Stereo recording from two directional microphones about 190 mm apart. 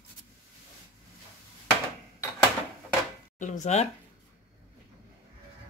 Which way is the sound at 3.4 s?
40° left (ahead or behind).